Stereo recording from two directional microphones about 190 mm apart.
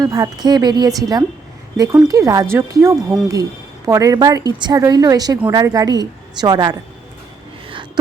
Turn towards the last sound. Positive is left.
turn(degrees=-20)  # may be behind; listen again after turning